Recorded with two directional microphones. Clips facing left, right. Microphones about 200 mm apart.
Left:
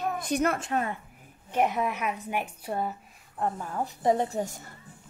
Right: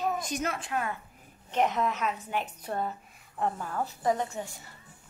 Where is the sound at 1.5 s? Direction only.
10° left (ahead or behind).